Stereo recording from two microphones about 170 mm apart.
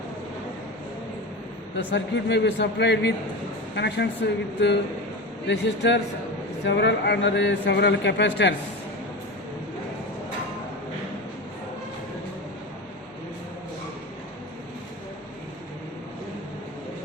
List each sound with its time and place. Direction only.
1.9 s a man's voice: 90° left